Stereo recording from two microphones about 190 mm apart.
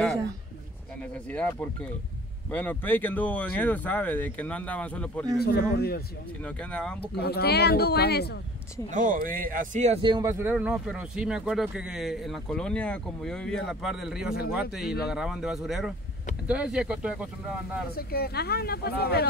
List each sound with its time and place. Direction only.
1.3 s speech: 5° left (ahead or behind)
5.4 s speech: 55° left (ahead or behind)
6.4 s speech: 5° left (ahead or behind)
7.2 s speech: 55° left (ahead or behind)
8.9 s speech: 45° right (ahead or behind)
10.0 s speech: 25° right (ahead or behind)
10.4 s speech: 5° right (ahead or behind)
17.9 s speech: 55° left (ahead or behind)